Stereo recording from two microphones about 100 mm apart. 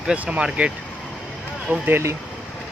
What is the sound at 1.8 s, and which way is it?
Speech, 25° right (ahead or behind).